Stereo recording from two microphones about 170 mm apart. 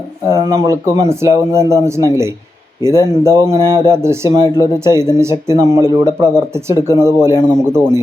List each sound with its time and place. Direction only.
0.3 s speech: 20° right (ahead or behind)